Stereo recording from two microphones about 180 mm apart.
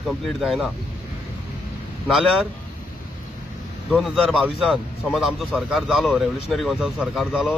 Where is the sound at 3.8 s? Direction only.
5° left (ahead or behind).